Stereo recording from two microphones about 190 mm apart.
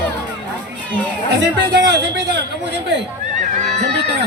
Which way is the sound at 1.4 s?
70° right (ahead or behind).